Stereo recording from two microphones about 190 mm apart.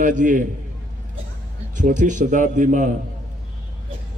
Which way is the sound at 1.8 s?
40° right (ahead or behind).